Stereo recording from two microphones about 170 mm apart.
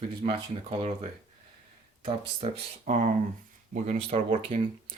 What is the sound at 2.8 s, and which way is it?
Speech, 50° right (ahead or behind).